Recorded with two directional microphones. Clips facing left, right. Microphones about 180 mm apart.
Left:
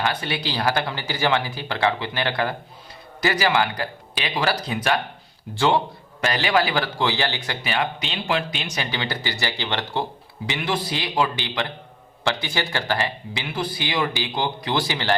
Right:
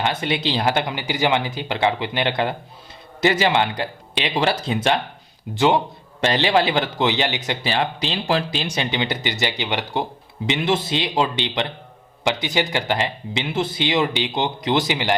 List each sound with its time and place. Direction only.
0.0 s a man's voice: 20° right (ahead or behind)